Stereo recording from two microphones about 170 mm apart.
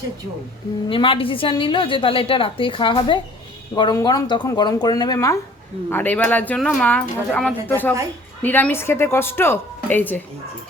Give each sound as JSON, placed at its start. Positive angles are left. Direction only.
{"t": 0.9, "sound": "a woman's voice", "side_deg": 30}